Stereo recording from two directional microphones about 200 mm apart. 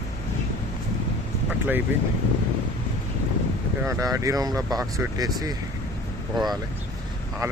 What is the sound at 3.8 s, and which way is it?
Speech, 15° right (ahead or behind).